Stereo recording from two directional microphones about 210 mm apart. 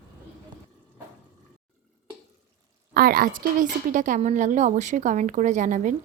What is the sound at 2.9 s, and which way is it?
A woman's voice, 45° right (ahead or behind).